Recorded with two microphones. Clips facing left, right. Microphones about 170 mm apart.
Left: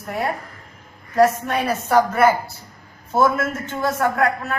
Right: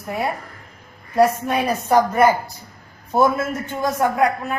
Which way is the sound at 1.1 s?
10° right (ahead or behind).